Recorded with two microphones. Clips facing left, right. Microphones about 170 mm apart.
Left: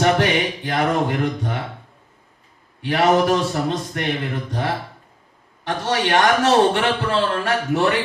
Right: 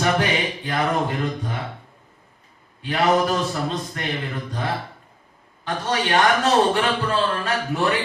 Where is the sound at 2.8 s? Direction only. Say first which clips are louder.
Left 3 dB; 65° left (ahead or behind).